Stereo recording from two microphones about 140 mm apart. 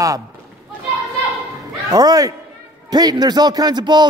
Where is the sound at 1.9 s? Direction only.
25° right (ahead or behind).